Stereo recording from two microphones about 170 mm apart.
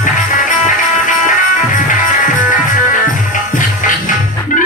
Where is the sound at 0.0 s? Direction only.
50° left (ahead or behind).